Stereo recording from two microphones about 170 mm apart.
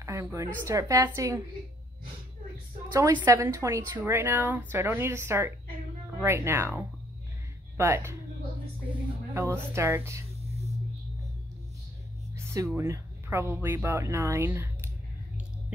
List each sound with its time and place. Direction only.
0.0 s a woman's voice: 15° right (ahead or behind)
2.9 s a woman's voice: 15° right (ahead or behind)
9.3 s a woman's voice: 15° right (ahead or behind)
12.4 s a woman's voice: 15° right (ahead or behind)